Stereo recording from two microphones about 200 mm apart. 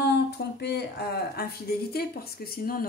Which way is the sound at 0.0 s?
55° left (ahead or behind).